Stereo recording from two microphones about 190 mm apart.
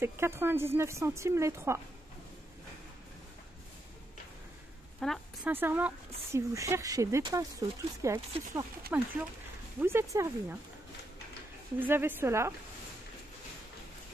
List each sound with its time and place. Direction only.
0.0 s speech: 15° right (ahead or behind)
5.0 s a woman's voice: centre (ahead or behind)
5.5 s speech: 10° right (ahead or behind)
11.8 s speech: 10° right (ahead or behind)